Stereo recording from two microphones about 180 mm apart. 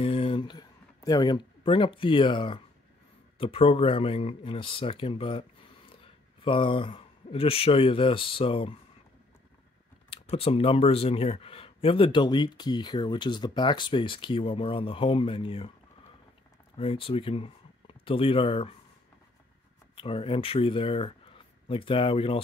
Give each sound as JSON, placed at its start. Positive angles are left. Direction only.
{"t": 0.0, "sound": "a sound", "side_deg": 30}
{"t": 3.3, "sound": "speech", "side_deg": 30}
{"t": 6.4, "sound": "speech", "side_deg": 30}
{"t": 10.0, "sound": "speech", "side_deg": 30}
{"t": 16.7, "sound": "speech", "side_deg": 30}
{"t": 20.0, "sound": "speech", "side_deg": 30}